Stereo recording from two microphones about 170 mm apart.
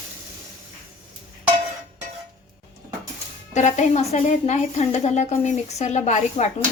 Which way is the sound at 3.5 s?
45° left (ahead or behind).